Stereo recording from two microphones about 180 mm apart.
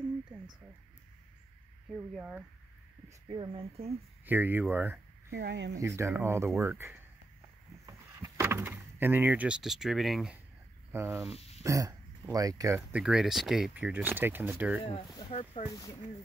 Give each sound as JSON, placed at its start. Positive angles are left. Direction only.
{"t": 2.0, "sound": "speech", "side_deg": -10}
{"t": 3.3, "sound": "speech", "side_deg": -30}
{"t": 4.3, "sound": "speech", "side_deg": -10}
{"t": 5.3, "sound": "speech", "side_deg": -70}
{"t": 5.8, "sound": "speech", "side_deg": -15}
{"t": 7.8, "sound": "door", "side_deg": -15}
{"t": 10.9, "sound": "speech", "side_deg": -15}
{"t": 11.3, "sound": "a sound", "side_deg": 35}
{"t": 11.6, "sound": "speech", "side_deg": -15}
{"t": 13.0, "sound": "speech", "side_deg": -5}
{"t": 15.1, "sound": "speech", "side_deg": 35}